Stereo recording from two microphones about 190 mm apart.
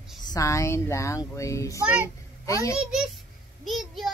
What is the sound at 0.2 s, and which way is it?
Speech, 20° left (ahead or behind).